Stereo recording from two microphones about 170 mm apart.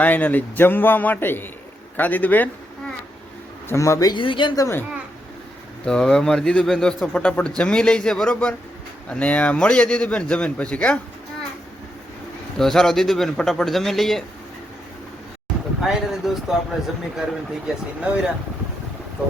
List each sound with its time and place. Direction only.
0.0 s speech: 10° left (ahead or behind)
3.7 s speech: 15° left (ahead or behind)
5.8 s speech: 5° left (ahead or behind)
12.5 s speech: centre (ahead or behind)
15.8 s speech: centre (ahead or behind)